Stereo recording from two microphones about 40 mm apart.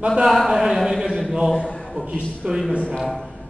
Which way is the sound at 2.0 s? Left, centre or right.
Right.